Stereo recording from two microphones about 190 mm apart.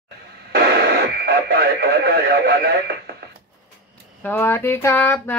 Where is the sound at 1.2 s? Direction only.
55° right (ahead or behind).